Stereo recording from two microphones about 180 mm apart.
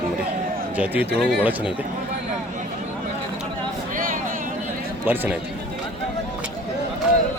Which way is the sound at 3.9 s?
50° right (ahead or behind).